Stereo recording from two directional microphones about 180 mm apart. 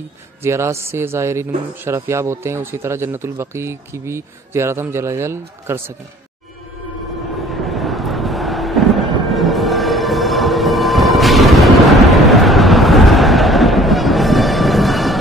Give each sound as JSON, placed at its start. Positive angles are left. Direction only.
{"t": 0.4, "sound": "a man's voice", "side_deg": -15}
{"t": 7.7, "sound": "music", "side_deg": 0}